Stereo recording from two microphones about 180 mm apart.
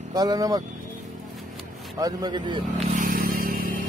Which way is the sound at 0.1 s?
20° right (ahead or behind).